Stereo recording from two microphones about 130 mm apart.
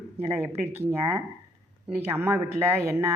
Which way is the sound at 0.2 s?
20° right (ahead or behind).